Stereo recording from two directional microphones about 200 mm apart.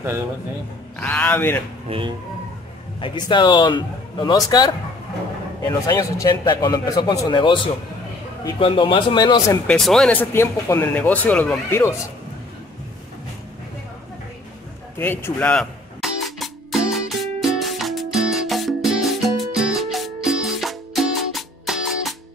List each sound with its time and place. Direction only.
0.9 s speech: 5° left (ahead or behind)
1.9 s speech: 25° right (ahead or behind)
3.0 s speech: 20° left (ahead or behind)
9.7 s speech: centre (ahead or behind)
15.0 s music: 10° left (ahead or behind)